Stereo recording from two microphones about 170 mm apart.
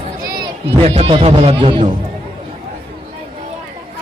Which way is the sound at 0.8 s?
35° right (ahead or behind).